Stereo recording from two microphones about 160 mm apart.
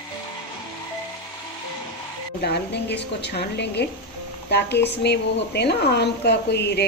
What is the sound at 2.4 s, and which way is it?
A woman's voice, 90° left.